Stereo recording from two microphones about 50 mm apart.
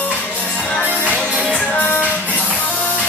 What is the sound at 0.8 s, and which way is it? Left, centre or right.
Music, left.